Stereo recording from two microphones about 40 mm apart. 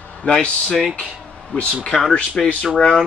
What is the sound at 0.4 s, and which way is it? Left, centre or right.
Speech, left.